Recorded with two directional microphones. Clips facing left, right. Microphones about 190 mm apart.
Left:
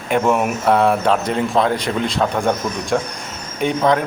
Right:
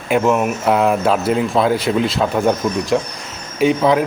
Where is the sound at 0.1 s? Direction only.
Centre (ahead or behind).